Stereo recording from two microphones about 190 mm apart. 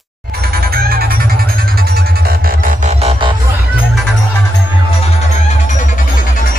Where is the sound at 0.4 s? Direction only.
55° right (ahead or behind); by 3.3 s 30° right (ahead or behind).